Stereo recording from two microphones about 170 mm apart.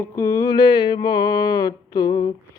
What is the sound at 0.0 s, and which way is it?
Speech, 20° left (ahead or behind).